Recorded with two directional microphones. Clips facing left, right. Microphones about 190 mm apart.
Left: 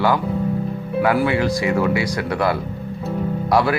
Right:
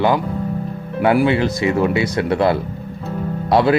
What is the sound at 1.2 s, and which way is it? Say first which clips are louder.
Speech: right 2 dB; 25° right (ahead or behind).